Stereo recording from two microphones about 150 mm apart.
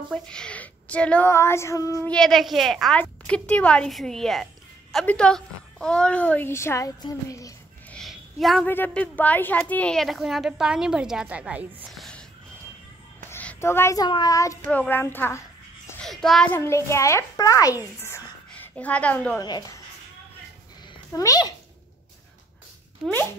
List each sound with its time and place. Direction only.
0.1 s a woman's voice: 5° left (ahead or behind)
2.0 s a woman's voice: 5° left (ahead or behind); by 7.5 s 20° left (ahead or behind)
7.9 s a sound: centre (ahead or behind)
8.6 s a woman's voice: 10° left (ahead or behind)
13.3 s a sound: 15° left (ahead or behind)
14.0 s a child's voice: 25° left (ahead or behind)
16.0 s a woman's voice: centre (ahead or behind)
16.5 s a child's voice: 20° left (ahead or behind)
18.0 s a sound: 15° left (ahead or behind)
19.4 s a child's voice: 25° left (ahead or behind)
21.1 s a child's voice: 20° left (ahead or behind)